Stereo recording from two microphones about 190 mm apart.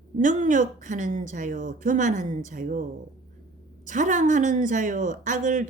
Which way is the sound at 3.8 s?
40° right (ahead or behind).